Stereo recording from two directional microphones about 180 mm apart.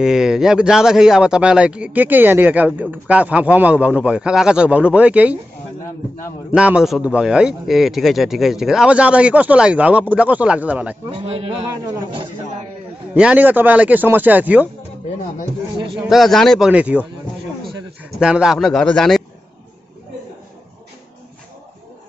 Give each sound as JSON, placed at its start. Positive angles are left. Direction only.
{"t": 0.0, "sound": "a man's voice", "side_deg": -5}
{"t": 6.5, "sound": "a man's voice", "side_deg": -5}
{"t": 11.1, "sound": "a man's voice", "side_deg": -35}
{"t": 13.1, "sound": "a man's voice", "side_deg": -10}
{"t": 16.0, "sound": "a man's voice", "side_deg": 0}
{"t": 18.2, "sound": "a man's voice", "side_deg": -5}